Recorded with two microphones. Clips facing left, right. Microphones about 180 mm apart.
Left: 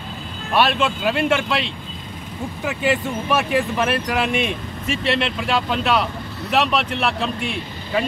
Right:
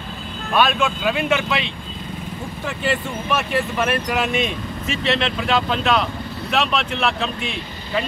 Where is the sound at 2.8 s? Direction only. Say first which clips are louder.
Left 2 dB; 15° left (ahead or behind).